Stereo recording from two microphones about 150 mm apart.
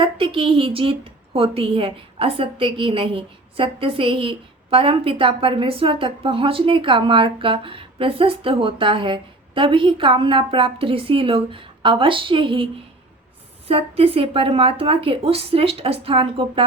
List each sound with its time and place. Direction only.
0.0 s a woman's voice: 35° right (ahead or behind)
13.7 s a woman's voice: 40° right (ahead or behind)